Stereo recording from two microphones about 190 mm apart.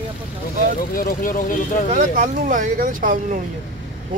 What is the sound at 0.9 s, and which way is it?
Speech, 50° left (ahead or behind).